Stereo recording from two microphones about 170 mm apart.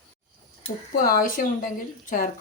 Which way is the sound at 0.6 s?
55° left (ahead or behind).